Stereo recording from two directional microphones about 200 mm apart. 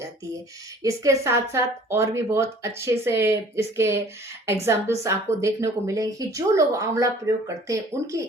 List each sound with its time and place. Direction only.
0.8 s speech: 15° right (ahead or behind)